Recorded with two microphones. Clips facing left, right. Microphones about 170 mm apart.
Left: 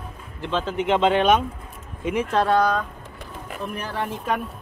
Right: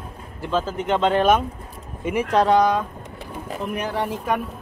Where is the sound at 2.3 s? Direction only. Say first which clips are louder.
Right 3 dB; 15° right (ahead or behind).